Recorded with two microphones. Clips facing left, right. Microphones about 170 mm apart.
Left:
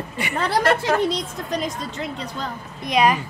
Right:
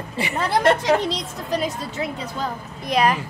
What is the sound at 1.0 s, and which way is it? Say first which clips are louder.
A woman's voice: left 3 dB; centre (ahead or behind).